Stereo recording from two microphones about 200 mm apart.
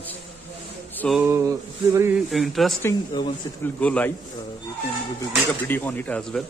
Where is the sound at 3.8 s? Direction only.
5° left (ahead or behind).